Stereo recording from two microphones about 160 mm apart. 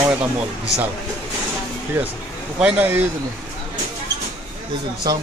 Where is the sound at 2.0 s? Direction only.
10° right (ahead or behind).